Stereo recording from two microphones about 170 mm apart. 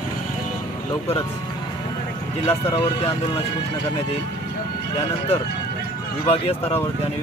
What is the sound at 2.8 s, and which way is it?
Speech, 35° left (ahead or behind).